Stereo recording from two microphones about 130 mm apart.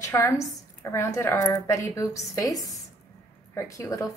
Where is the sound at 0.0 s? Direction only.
20° left (ahead or behind).